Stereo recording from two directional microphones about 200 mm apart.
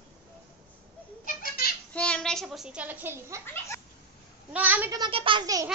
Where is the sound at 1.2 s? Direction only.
45° left (ahead or behind).